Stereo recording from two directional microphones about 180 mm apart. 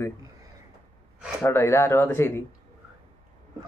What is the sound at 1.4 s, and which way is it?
Speech, 15° left (ahead or behind).